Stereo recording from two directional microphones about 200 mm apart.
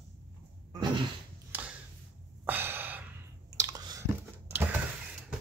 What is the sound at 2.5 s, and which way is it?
Gasp, 10° right (ahead or behind).